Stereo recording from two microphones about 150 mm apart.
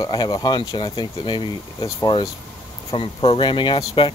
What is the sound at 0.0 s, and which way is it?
Speech, 30° left (ahead or behind).